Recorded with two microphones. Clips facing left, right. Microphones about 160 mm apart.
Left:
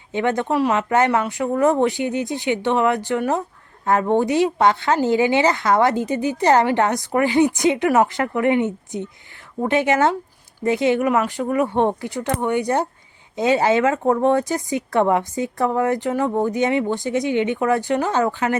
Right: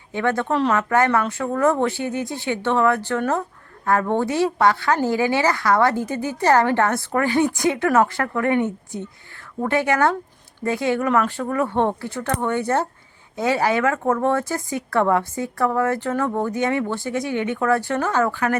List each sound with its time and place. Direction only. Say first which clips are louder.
0.1 s a woman's voice: left 1 dB; 20° left (ahead or behind)